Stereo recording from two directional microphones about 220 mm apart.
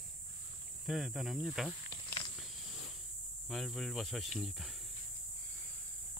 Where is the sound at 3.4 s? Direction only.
Centre (ahead or behind).